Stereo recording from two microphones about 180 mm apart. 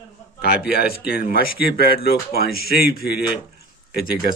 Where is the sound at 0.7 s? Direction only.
60° left (ahead or behind).